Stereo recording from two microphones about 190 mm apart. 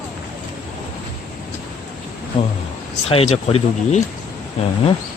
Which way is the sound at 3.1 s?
30° left (ahead or behind).